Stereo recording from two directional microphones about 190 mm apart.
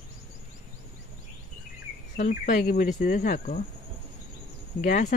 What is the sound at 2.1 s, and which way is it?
Speech, 40° left (ahead or behind).